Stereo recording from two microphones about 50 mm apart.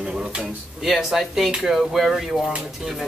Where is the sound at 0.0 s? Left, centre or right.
Centre.